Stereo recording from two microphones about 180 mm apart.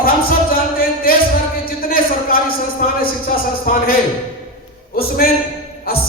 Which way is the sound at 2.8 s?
45° left (ahead or behind).